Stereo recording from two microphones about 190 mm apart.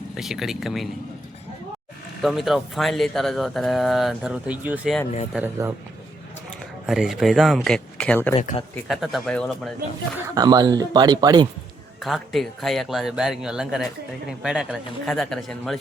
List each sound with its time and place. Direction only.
0.2 s speech: centre (ahead or behind)
2.2 s speech: centre (ahead or behind)
6.8 s speech: centre (ahead or behind)
8.4 s speech: 35° left (ahead or behind)
8.7 s speech: centre (ahead or behind)
10.2 s speech: 20° right (ahead or behind)
12.0 s speech: centre (ahead or behind)